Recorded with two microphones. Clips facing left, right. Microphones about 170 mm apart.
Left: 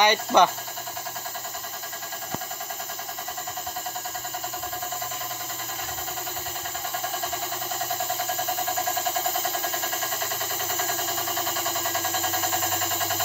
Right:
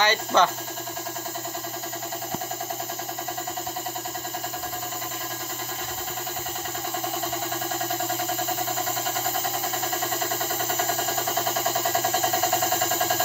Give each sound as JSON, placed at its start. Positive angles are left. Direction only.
{"t": 0.0, "sound": "speech", "side_deg": 15}